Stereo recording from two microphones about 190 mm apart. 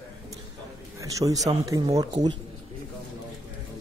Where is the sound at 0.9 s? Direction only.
15° right (ahead or behind).